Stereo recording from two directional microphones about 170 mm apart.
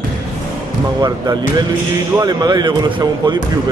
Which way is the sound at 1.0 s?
25° right (ahead or behind).